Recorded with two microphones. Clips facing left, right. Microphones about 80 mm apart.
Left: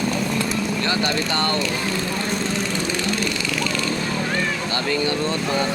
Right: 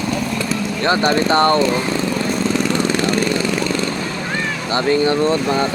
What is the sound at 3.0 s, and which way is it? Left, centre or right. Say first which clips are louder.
Lawn mower: right 7 dB; right.